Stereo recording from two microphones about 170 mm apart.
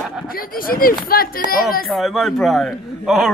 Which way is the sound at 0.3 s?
60° left (ahead or behind).